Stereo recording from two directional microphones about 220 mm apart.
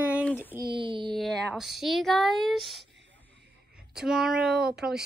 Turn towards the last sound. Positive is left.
turn(degrees=-5)  # may be behind; listen again after turning